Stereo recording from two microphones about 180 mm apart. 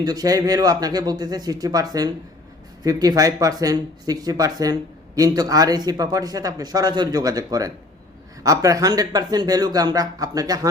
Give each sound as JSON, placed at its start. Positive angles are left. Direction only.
{"t": 0.0, "sound": "speech", "side_deg": -20}